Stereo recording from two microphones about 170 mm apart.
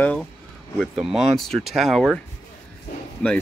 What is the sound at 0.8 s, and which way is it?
Speech, 5° right (ahead or behind).